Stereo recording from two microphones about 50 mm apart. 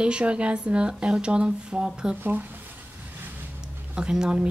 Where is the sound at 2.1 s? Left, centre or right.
Right.